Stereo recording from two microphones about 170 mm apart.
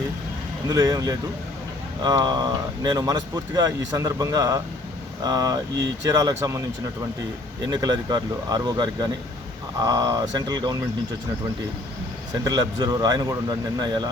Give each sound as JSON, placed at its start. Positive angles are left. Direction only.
{"t": 0.7, "sound": "speech", "side_deg": -20}
{"t": 5.7, "sound": "speech", "side_deg": -90}
{"t": 6.1, "sound": "speech", "side_deg": -20}
{"t": 7.7, "sound": "speech", "side_deg": -20}
{"t": 12.5, "sound": "speech", "side_deg": -20}